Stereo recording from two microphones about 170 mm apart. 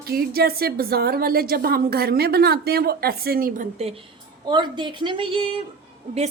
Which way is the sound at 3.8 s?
35° right (ahead or behind).